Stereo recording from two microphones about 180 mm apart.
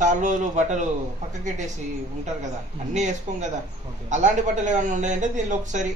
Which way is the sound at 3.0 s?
40° right (ahead or behind).